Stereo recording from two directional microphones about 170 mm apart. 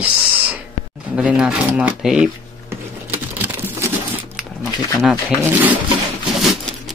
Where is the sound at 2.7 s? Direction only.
15° right (ahead or behind).